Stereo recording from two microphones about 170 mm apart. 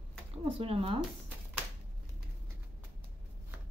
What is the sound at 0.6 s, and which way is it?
Speech, 35° right (ahead or behind).